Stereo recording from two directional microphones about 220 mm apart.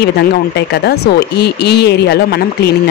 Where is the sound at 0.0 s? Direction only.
50° left (ahead or behind).